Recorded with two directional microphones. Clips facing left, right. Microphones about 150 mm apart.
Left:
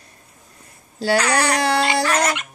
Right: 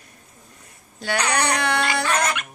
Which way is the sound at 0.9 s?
30° left (ahead or behind).